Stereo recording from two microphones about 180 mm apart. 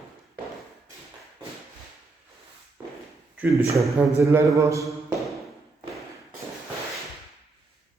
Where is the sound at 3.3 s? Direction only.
10° right (ahead or behind).